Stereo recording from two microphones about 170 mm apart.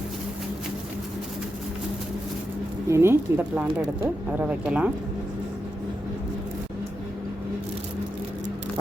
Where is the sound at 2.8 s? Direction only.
15° right (ahead or behind).